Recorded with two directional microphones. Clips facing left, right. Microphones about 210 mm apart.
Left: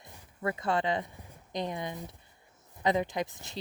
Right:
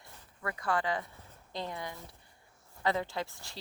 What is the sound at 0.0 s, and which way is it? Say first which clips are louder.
A woman's voice: left 6 dB; 20° left (ahead or behind).